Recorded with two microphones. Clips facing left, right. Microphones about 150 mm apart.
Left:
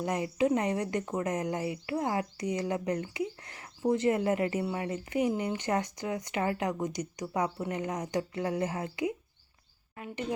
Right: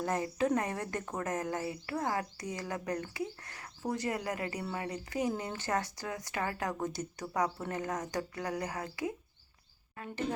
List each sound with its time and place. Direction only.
0.0 s speech: 15° left (ahead or behind)